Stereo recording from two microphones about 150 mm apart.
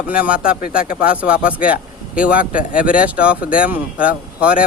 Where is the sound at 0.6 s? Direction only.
75° left (ahead or behind).